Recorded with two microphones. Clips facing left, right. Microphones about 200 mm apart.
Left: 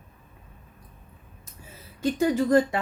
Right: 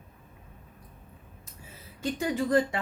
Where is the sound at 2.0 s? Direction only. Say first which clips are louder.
Left 6 dB; 40° left (ahead or behind).